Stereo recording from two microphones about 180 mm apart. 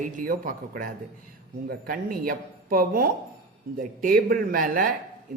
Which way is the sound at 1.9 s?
55° right (ahead or behind).